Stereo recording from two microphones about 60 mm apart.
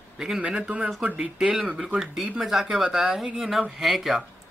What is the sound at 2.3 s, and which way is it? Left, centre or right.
Speech, centre.